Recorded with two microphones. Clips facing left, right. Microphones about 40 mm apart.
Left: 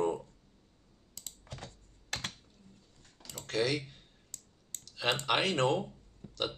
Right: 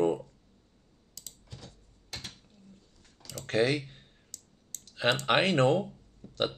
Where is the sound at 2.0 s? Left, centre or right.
Left.